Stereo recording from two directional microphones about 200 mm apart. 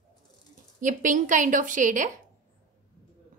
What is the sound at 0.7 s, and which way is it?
A woman's voice, 40° right (ahead or behind).